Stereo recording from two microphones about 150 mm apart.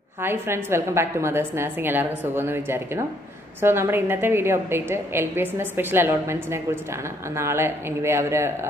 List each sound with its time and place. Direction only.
0.2 s a woman's voice: 15° right (ahead or behind)